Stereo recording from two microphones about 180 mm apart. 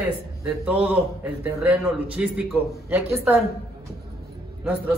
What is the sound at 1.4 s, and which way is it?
A man's voice, 10° right (ahead or behind).